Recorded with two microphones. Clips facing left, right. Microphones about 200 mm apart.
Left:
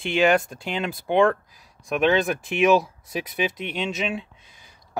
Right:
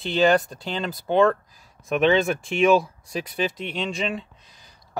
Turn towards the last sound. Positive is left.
turn(degrees=5)  # may be behind; listen again after turning